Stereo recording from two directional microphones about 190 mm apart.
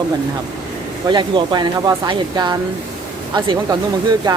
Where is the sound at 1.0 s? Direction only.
25° right (ahead or behind).